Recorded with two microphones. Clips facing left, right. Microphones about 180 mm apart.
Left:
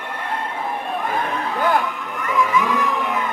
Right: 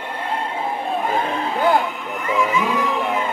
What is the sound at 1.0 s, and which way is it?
Music, 25° right (ahead or behind).